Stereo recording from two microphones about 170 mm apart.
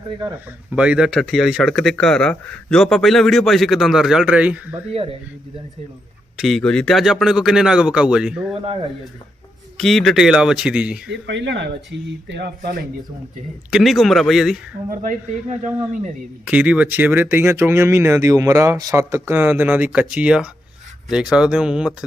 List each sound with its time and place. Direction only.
0.8 s speech: 5° right (ahead or behind)
4.9 s speech: 35° right (ahead or behind)
6.3 s speech: centre (ahead or behind)
9.7 s speech: centre (ahead or behind)
11.1 s speech: 90° right
13.7 s speech: centre (ahead or behind)
14.8 s speech: 50° right (ahead or behind)
16.5 s speech: 10° right (ahead or behind)